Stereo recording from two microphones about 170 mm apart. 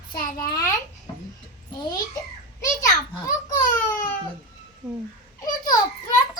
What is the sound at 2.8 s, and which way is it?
Speech, 20° left (ahead or behind).